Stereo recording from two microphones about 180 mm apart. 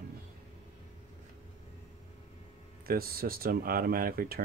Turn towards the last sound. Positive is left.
turn(degrees=-55)  # may be behind; listen again after turning